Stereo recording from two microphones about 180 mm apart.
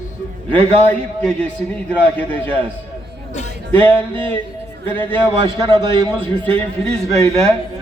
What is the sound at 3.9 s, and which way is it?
A man's voice, 10° left (ahead or behind).